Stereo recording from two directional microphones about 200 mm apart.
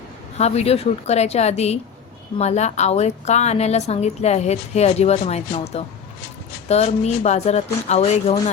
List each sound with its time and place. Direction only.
0.3 s a woman's voice: 30° left (ahead or behind)